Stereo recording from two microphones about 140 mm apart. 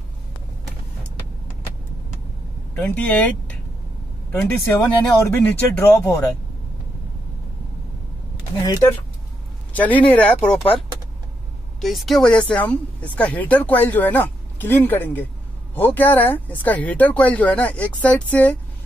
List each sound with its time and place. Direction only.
2.7 s speech: 10° left (ahead or behind)
8.5 s speech: 25° left (ahead or behind)
9.8 s speech: 10° left (ahead or behind)
11.8 s speech: centre (ahead or behind)